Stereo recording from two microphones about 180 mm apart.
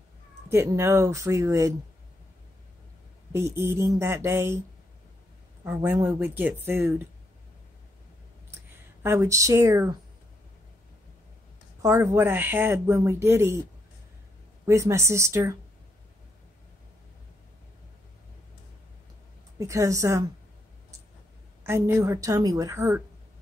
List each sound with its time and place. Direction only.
0.5 s speech: 15° right (ahead or behind)
3.3 s speech: 15° right (ahead or behind)
5.6 s speech: 15° right (ahead or behind)
9.0 s speech: 15° right (ahead or behind)
11.8 s speech: 15° right (ahead or behind)
14.7 s speech: 15° right (ahead or behind)
19.6 s speech: 15° right (ahead or behind)
21.6 s speech: 15° right (ahead or behind)